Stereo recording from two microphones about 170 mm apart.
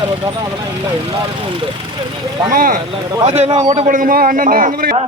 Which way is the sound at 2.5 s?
55° right (ahead or behind).